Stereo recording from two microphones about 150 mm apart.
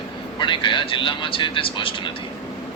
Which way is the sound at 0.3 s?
30° left (ahead or behind).